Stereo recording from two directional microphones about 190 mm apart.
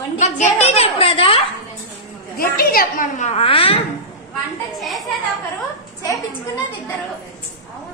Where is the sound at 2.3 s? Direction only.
55° left (ahead or behind); by 3.8 s 30° left (ahead or behind).